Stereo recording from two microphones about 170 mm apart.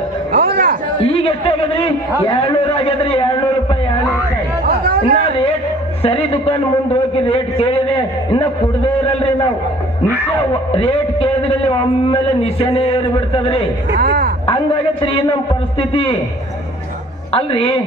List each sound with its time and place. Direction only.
0.4 s a sound: 65° right (ahead or behind)
1.0 s chatter: 35° left (ahead or behind)
2.2 s a man's voice: 30° left (ahead or behind)
4.8 s a sound: 65° right (ahead or behind)
6.0 s a man's voice: 35° left (ahead or behind)
10.7 s a man's voice: 35° left (ahead or behind)
13.9 s speech: 65° right (ahead or behind)
14.5 s a man's voice: 30° left (ahead or behind)
17.3 s a man's voice: 35° left (ahead or behind)